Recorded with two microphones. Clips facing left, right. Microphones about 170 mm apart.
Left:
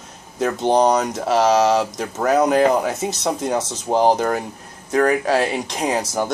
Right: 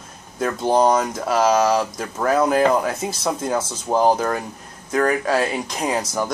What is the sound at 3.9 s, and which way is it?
Speech, 35° left (ahead or behind).